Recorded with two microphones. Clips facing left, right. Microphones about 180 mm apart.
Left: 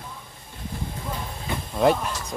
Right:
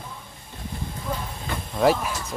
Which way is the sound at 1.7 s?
5° right (ahead or behind).